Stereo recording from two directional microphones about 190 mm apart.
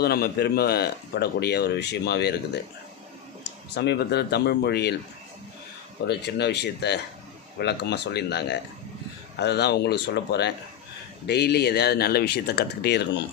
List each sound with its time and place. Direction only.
0.0 s speech: 55° left (ahead or behind)
3.8 s speech: 60° left (ahead or behind)
6.1 s speech: 60° left (ahead or behind)